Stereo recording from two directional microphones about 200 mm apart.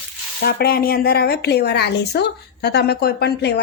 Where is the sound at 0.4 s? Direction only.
50° left (ahead or behind).